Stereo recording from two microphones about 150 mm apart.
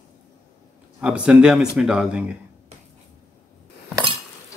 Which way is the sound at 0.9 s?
5° right (ahead or behind).